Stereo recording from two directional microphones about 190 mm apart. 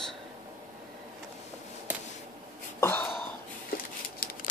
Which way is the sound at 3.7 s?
50° left (ahead or behind).